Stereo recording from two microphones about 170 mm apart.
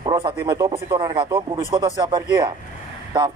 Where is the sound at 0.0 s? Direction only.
30° right (ahead or behind).